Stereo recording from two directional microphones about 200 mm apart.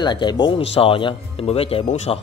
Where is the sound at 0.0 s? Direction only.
20° left (ahead or behind).